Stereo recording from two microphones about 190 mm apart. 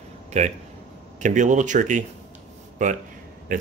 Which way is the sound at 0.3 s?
40° right (ahead or behind).